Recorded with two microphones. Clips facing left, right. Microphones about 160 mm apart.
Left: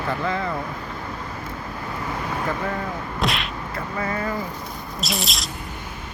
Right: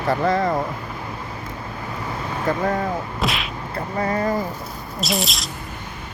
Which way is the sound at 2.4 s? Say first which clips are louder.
Right 8 dB; 40° right (ahead or behind).